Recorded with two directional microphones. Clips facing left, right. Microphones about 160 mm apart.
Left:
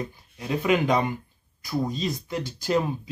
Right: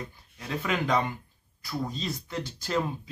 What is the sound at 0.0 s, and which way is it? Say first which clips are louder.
Speech: left 6 dB; 15° left (ahead or behind).